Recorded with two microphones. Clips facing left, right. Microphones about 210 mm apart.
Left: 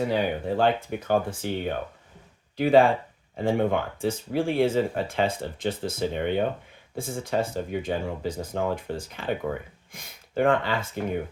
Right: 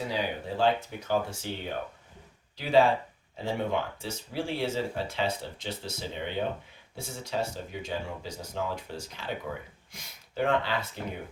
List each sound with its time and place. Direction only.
0.1 s speech: 55° left (ahead or behind)